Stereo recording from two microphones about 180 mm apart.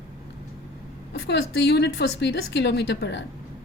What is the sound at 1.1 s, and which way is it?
A woman's voice, 70° left (ahead or behind).